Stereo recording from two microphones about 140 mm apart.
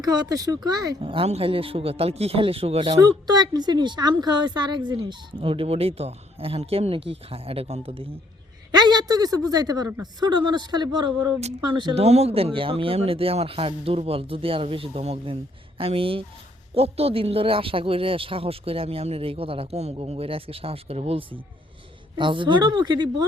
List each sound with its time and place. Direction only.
0.0 s speech: 30° right (ahead or behind); by 2.9 s 45° right (ahead or behind)
2.9 s speech: 30° right (ahead or behind)
8.7 s speech: 30° right (ahead or behind)
11.9 s speech: 50° right (ahead or behind); by 23.2 s 30° right (ahead or behind)